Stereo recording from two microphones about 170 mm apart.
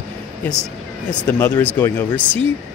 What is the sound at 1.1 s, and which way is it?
A man's voice, 10° left (ahead or behind).